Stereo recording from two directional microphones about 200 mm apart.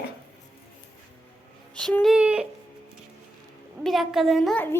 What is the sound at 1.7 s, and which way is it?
Speech, 5° left (ahead or behind).